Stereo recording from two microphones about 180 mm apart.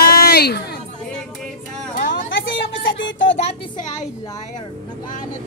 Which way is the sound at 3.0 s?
90° left.